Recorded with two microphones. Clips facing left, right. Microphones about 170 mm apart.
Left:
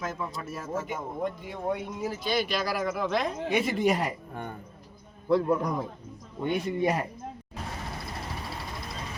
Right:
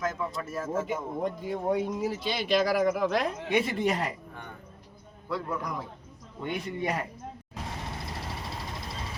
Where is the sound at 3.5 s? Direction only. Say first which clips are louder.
Left 2 dB; 10° left (ahead or behind).